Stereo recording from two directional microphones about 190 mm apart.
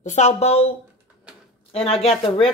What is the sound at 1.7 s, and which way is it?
Speech, 30° left (ahead or behind).